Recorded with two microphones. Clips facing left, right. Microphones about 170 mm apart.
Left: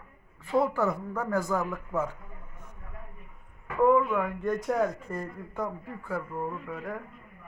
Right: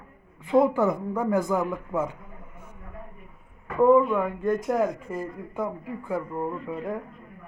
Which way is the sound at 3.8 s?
20° right (ahead or behind).